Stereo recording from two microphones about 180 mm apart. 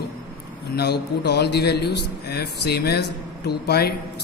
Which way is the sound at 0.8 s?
65° left (ahead or behind).